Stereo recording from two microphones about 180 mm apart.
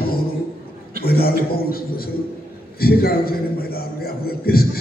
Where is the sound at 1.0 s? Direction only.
55° left (ahead or behind).